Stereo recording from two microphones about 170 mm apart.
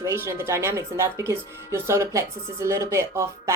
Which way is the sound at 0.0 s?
15° right (ahead or behind).